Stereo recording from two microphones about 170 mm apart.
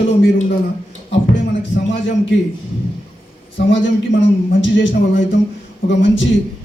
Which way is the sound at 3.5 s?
90° left.